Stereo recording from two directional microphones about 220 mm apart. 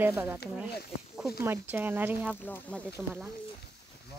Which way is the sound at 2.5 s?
5° left (ahead or behind).